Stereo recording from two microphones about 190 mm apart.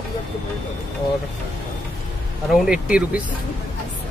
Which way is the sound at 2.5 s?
5° right (ahead or behind).